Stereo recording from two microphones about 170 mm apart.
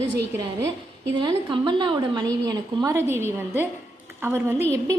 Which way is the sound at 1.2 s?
25° right (ahead or behind).